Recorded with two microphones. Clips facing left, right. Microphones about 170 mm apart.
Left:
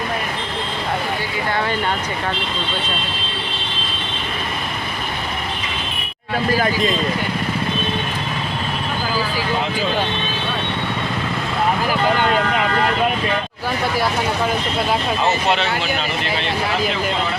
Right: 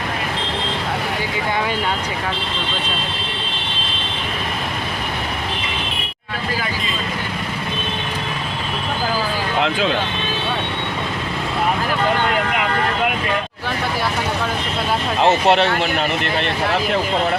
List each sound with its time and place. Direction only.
15.4 s speech: 60° right (ahead or behind)